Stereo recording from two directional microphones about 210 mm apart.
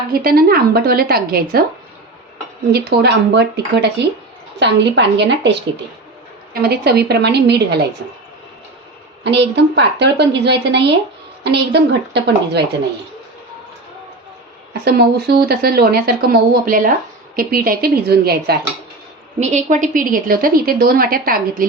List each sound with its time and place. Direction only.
0.1 s a woman's voice: 45° right (ahead or behind)
2.7 s a woman's voice: 50° right (ahead or behind)
9.2 s a woman's voice: 55° right (ahead or behind)
14.7 s a woman's voice: 50° right (ahead or behind)
19.4 s a woman's voice: 35° right (ahead or behind)